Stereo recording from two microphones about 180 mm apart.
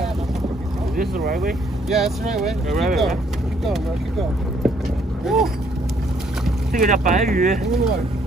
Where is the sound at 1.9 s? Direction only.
Centre (ahead or behind).